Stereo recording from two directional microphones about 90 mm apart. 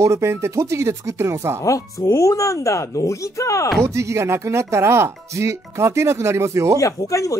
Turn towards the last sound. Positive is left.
turn(degrees=35)  # may be behind; listen again after turning